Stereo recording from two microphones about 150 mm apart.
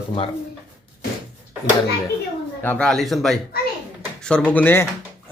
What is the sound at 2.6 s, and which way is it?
Speech, 10° left (ahead or behind).